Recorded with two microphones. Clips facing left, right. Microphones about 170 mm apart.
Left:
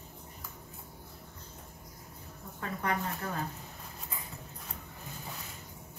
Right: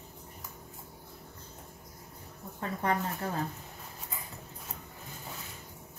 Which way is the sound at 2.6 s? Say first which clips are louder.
Right 3 dB; 30° right (ahead or behind).